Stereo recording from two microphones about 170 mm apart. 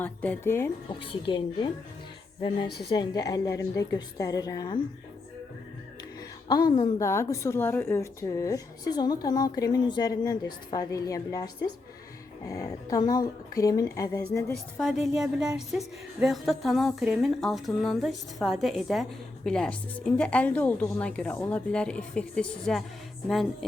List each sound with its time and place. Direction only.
0.0 s a woman's voice: 10° left (ahead or behind)
1.1 s a woman's voice: 30° left (ahead or behind)
2.9 s a woman's voice: 25° left (ahead or behind)
6.5 s a woman's voice: 25° left (ahead or behind)
14.8 s a woman's voice: centre (ahead or behind)